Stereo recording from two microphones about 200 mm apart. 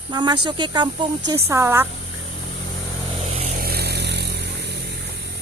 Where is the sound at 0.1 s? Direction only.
20° right (ahead or behind).